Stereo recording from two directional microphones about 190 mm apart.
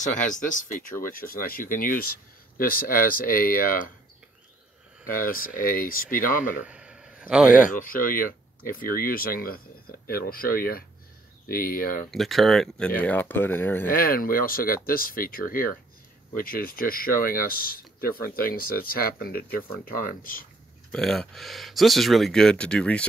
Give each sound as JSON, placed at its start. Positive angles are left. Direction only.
{"t": 0.0, "sound": "speech", "side_deg": 40}
{"t": 5.0, "sound": "speech", "side_deg": 50}
{"t": 6.6, "sound": "a sound", "side_deg": -5}
{"t": 7.7, "sound": "speech", "side_deg": 45}
{"t": 12.1, "sound": "speech", "side_deg": 0}
{"t": 13.8, "sound": "speech", "side_deg": 50}
{"t": 20.9, "sound": "speech", "side_deg": 0}